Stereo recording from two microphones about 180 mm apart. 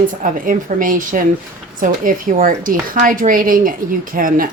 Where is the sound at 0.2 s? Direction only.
50° right (ahead or behind).